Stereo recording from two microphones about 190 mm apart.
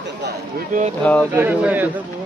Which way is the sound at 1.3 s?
10° right (ahead or behind).